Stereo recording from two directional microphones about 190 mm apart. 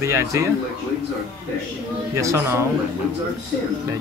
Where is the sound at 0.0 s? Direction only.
15° right (ahead or behind).